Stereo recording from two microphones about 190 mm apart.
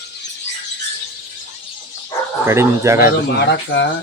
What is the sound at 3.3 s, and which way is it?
Speech, 65° left (ahead or behind).